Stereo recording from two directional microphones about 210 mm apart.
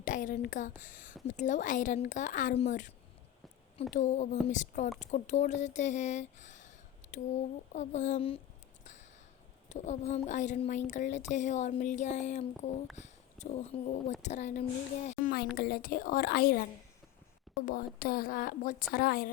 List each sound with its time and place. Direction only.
0.0 s speech: 40° left (ahead or behind)
3.9 s speech: 35° left (ahead or behind)
8.8 s a sound: 35° left (ahead or behind)
9.6 s speech: 35° left (ahead or behind)
17.7 s speech: 45° left (ahead or behind)